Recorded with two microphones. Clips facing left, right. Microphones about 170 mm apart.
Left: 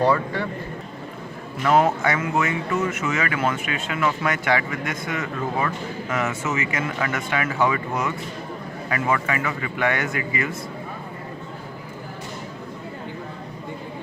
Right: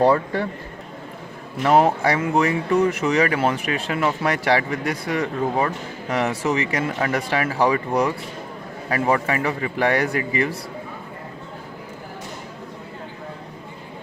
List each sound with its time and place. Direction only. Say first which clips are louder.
0.0 s speech: right 3 dB; 40° right (ahead or behind)
1.6 s speech: right 2 dB; 35° right (ahead or behind)